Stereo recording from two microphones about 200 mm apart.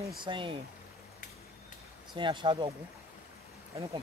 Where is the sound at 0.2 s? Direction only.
25° right (ahead or behind).